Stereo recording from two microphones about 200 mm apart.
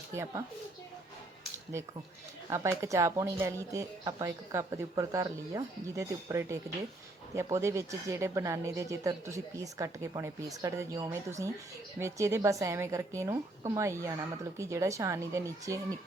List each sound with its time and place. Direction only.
0.1 s speech: 15° right (ahead or behind)
1.7 s speech: 15° right (ahead or behind)